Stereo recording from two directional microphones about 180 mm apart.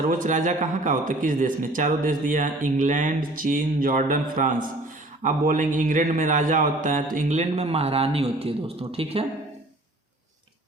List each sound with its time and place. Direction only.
0.0 s a man's voice: 45° right (ahead or behind)